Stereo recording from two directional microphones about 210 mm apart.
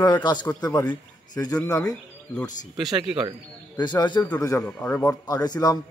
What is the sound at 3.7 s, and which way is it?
A man's voice, 20° left (ahead or behind).